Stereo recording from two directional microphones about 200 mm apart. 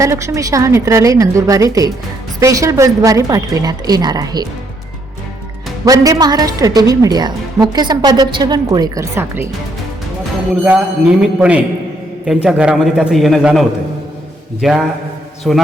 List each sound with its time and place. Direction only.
0.0 s a woman's voice: 15° right (ahead or behind)
5.8 s a woman's voice: 15° right (ahead or behind)
10.6 s a woman's voice: 5° right (ahead or behind)